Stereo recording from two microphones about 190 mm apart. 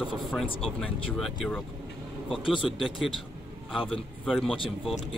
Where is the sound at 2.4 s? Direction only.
25° left (ahead or behind).